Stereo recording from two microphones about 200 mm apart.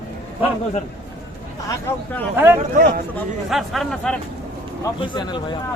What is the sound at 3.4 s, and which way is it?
Speech, centre (ahead or behind).